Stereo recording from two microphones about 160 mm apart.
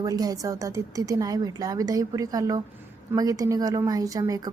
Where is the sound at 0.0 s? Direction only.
20° right (ahead or behind).